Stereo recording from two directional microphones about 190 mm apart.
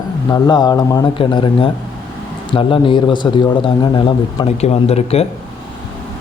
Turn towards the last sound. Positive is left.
turn(degrees=35)  # may be behind; listen again after turning